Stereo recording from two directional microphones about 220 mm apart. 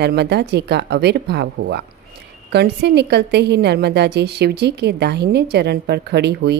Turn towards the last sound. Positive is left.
turn(degrees=-50)  # may be behind; listen again after turning